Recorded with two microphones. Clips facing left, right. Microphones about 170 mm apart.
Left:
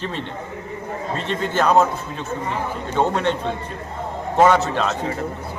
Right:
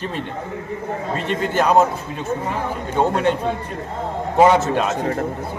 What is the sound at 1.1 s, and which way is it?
Speech, 10° right (ahead or behind).